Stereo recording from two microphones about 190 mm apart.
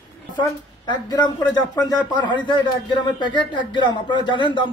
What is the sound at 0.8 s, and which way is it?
A man's voice, 20° left (ahead or behind).